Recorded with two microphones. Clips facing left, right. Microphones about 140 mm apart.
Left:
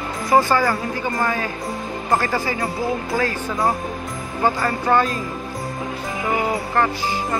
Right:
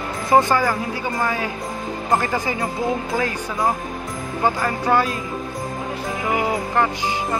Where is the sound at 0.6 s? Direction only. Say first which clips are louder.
Left 1 dB; 5° right (ahead or behind).